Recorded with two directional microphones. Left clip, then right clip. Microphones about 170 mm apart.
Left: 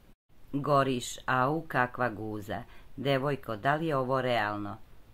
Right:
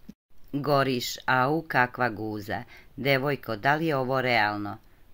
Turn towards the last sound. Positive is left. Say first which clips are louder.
# right 5 dB
turn(degrees=-15)  # may be behind; listen again after turning